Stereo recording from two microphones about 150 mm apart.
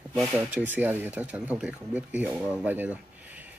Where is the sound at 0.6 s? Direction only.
10° right (ahead or behind).